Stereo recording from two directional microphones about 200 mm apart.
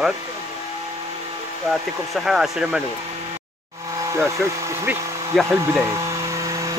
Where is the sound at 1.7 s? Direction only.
Centre (ahead or behind).